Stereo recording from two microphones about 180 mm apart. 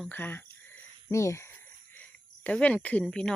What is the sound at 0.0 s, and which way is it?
Speech, 10° left (ahead or behind).